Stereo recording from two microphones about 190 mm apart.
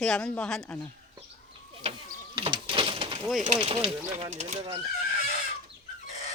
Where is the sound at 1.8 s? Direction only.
30° right (ahead or behind).